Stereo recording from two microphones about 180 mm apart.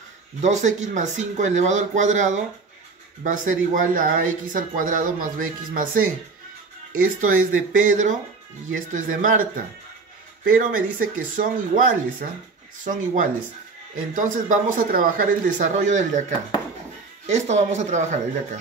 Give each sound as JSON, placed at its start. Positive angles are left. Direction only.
{"t": 0.4, "sound": "speech", "side_deg": -40}
{"t": 10.4, "sound": "speech", "side_deg": -50}
{"t": 17.3, "sound": "speech", "side_deg": -40}